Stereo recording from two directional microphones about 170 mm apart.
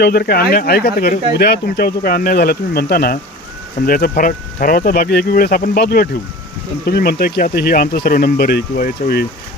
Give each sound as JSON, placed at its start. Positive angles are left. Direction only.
{"t": 0.0, "sound": "speech", "side_deg": 65}